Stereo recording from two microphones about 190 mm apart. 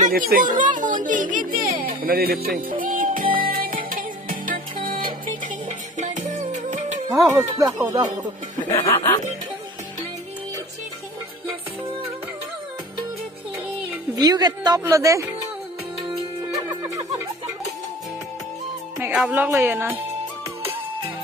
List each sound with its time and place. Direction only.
0.0 s a sound: 50° right (ahead or behind)
2.0 s music: 50° right (ahead or behind)
7.1 s speech: 20° right (ahead or behind)
8.9 s speech: 15° left (ahead or behind)
14.1 s speech: 20° right (ahead or behind)
16.1 s music: 15° right (ahead or behind)
18.9 s speech: 5° right (ahead or behind)